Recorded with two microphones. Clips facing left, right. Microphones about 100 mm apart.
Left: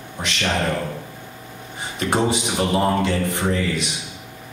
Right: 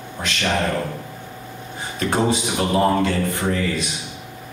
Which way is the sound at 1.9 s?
20° left (ahead or behind).